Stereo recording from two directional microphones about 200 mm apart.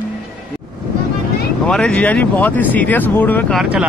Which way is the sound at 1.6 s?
5° left (ahead or behind).